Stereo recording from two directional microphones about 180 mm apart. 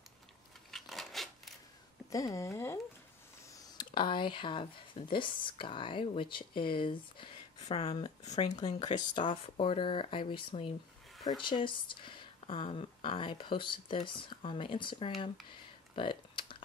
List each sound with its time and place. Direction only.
0.7 s a sound: centre (ahead or behind)
2.0 s speech: 20° left (ahead or behind); by 8.5 s 40° left (ahead or behind)
8.6 s speech: 25° left (ahead or behind)
16.0 s typing: 30° left (ahead or behind)